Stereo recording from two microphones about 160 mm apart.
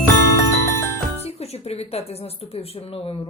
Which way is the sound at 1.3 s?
40° left (ahead or behind).